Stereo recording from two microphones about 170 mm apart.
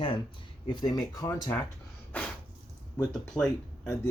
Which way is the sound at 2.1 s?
10° left (ahead or behind).